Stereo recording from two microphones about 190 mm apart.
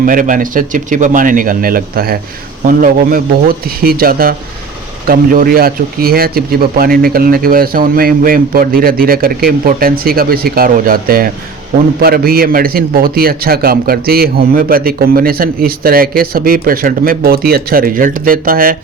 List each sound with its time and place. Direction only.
0.0 s a man's voice: 45° right (ahead or behind)